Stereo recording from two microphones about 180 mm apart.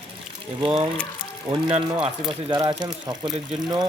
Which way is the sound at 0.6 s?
30° right (ahead or behind).